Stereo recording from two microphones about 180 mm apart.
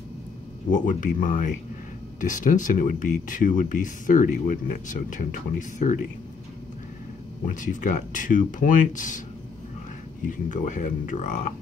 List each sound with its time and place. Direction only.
0.7 s speech: 45° left (ahead or behind)
7.4 s speech: 45° left (ahead or behind)
10.2 s speech: 45° left (ahead or behind)